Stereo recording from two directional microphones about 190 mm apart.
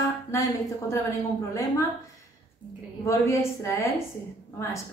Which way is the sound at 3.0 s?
15° left (ahead or behind).